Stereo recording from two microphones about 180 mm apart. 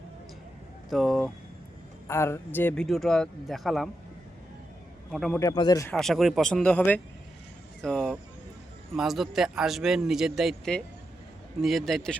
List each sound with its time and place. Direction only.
0.9 s speech: centre (ahead or behind)
2.0 s speech: 15° left (ahead or behind)
5.1 s speech: centre (ahead or behind)
5.4 s speech: 20° left (ahead or behind)
5.9 s speech: centre (ahead or behind)